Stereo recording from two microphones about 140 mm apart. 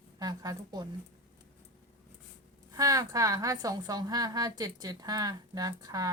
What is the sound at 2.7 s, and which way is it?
A woman's voice, 25° right (ahead or behind).